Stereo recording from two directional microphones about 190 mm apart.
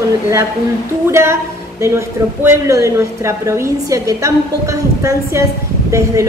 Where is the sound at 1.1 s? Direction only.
15° right (ahead or behind).